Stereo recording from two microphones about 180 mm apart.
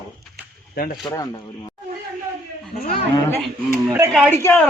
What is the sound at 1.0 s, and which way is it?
Speech, 20° left (ahead or behind).